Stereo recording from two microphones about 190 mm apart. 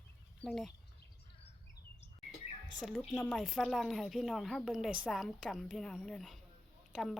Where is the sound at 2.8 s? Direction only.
Centre (ahead or behind).